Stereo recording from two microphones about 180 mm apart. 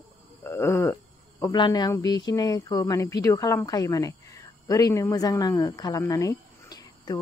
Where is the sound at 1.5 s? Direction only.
25° left (ahead or behind).